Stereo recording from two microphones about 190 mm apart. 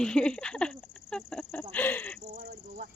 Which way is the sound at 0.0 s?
5° left (ahead or behind).